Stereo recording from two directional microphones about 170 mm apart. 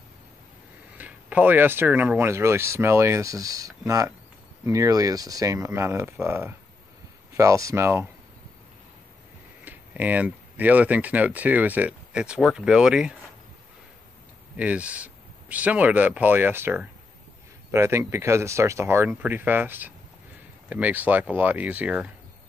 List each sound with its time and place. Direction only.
0.9 s speech: 10° right (ahead or behind)
9.7 s speech: 10° right (ahead or behind)
14.6 s speech: 10° right (ahead or behind)